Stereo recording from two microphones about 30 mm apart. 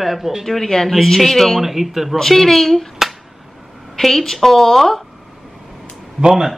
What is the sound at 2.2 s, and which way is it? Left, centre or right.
Speech, centre.